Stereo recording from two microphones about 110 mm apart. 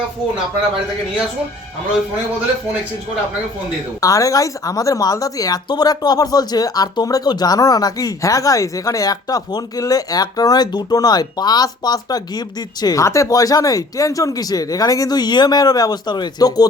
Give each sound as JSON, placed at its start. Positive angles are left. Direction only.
{"t": 4.0, "sound": "speech", "side_deg": 30}